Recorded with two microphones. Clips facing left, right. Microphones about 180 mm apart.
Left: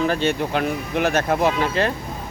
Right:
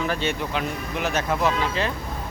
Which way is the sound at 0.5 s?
60° left (ahead or behind).